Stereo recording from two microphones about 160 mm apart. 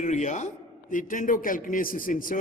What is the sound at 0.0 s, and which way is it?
A man's voice, 50° left (ahead or behind).